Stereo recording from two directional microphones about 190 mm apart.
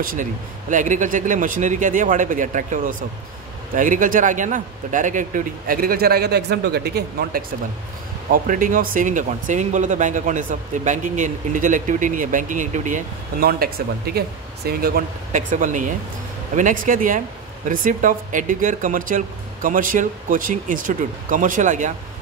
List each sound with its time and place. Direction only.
0.0 s speech: 45° right (ahead or behind)